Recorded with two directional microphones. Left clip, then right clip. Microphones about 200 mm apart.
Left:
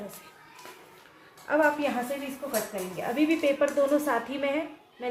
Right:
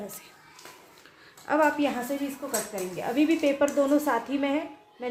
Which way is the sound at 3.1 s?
40° right (ahead or behind).